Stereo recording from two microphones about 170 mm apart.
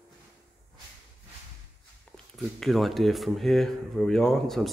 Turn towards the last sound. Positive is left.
turn(degrees=5)  # may be behind; listen again after turning